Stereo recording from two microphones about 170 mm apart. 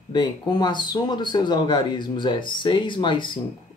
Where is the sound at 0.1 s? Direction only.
25° left (ahead or behind).